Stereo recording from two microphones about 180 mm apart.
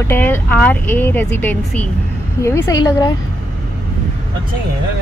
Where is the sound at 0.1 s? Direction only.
10° left (ahead or behind).